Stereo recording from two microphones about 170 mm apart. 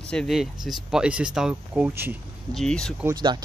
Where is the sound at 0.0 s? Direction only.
5° left (ahead or behind).